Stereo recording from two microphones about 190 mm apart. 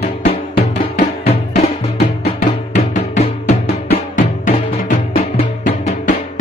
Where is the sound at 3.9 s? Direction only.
50° left (ahead or behind).